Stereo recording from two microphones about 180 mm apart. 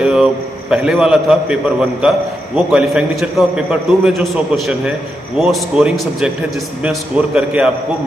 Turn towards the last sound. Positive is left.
turn(degrees=-5)  # may be behind; listen again after turning